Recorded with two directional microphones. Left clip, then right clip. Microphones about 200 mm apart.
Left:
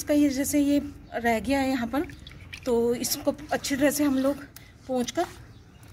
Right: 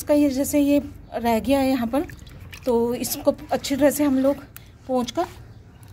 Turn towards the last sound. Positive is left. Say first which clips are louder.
# right 4 dB
turn(degrees=-25)  # may be behind; listen again after turning